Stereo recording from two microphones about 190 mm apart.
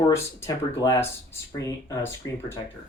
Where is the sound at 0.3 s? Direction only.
15° left (ahead or behind).